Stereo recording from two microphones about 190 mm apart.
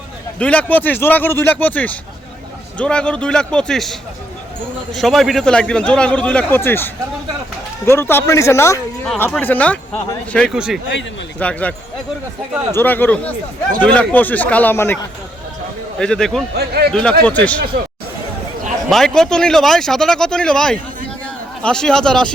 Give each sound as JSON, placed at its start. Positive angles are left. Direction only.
{"t": 0.3, "sound": "a man's voice", "side_deg": 5}
{"t": 4.9, "sound": "a man's voice", "side_deg": 0}
{"t": 12.7, "sound": "speech", "side_deg": 10}
{"t": 16.0, "sound": "a man's voice", "side_deg": 5}
{"t": 16.6, "sound": "speech", "side_deg": -55}
{"t": 16.9, "sound": "a man's voice", "side_deg": 5}
{"t": 18.9, "sound": "a man's voice", "side_deg": 0}